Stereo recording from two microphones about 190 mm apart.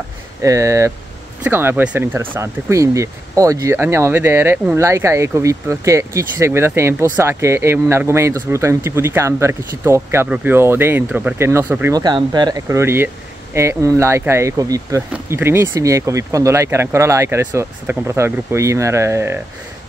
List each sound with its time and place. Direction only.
0.4 s speech: 15° right (ahead or behind)